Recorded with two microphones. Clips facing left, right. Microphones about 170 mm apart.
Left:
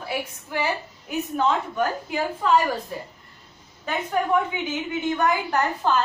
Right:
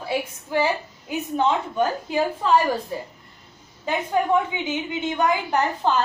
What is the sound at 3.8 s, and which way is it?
A woman's voice, 20° right (ahead or behind).